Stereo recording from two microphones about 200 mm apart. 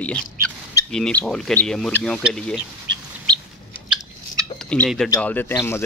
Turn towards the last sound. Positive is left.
turn(degrees=10)  # may be behind; listen again after turning